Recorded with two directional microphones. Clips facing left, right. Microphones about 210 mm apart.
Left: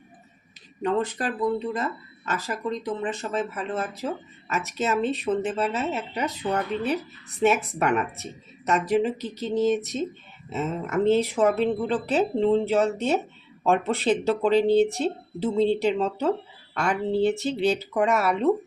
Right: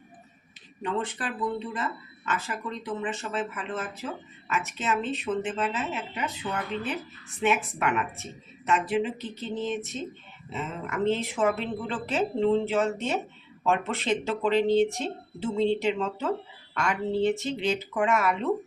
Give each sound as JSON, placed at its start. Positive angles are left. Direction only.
{"t": 0.8, "sound": "speech", "side_deg": 40}